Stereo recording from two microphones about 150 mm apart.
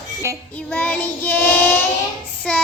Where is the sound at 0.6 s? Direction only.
10° left (ahead or behind).